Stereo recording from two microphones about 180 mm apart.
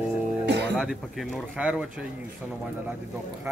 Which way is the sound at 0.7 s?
Centre (ahead or behind).